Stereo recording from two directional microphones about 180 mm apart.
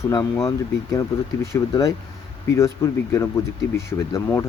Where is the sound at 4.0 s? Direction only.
20° left (ahead or behind).